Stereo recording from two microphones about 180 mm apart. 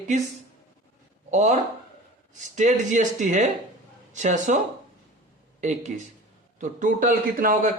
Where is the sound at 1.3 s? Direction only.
40° right (ahead or behind).